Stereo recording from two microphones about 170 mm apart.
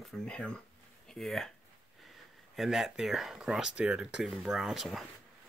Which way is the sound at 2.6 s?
Centre (ahead or behind).